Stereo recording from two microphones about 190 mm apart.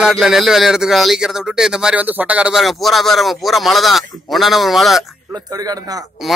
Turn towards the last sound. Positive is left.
turn(degrees=-20)  # may be behind; listen again after turning